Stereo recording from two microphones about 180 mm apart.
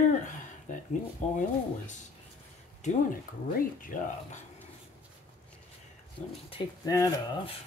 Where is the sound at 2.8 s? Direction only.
40° left (ahead or behind).